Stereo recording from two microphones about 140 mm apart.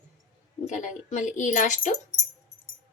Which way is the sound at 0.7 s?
60° left (ahead or behind).